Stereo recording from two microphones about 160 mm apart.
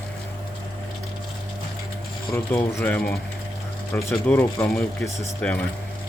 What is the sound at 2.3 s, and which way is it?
Speech, 15° left (ahead or behind).